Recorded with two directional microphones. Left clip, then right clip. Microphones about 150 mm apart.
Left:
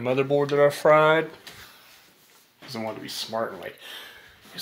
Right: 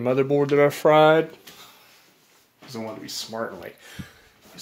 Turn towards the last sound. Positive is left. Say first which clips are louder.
# left 2 dB
turn(degrees=-20)  # may be behind; listen again after turning